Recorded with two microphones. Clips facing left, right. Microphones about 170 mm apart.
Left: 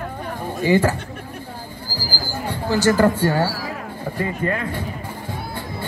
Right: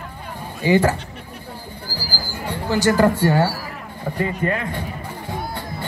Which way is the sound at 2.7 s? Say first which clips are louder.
Even; 15° right (ahead or behind).